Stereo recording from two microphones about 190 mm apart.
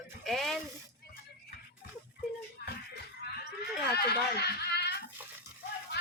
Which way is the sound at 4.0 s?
60° left (ahead or behind).